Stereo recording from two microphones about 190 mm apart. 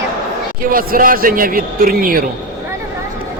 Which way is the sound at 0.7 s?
50° right (ahead or behind).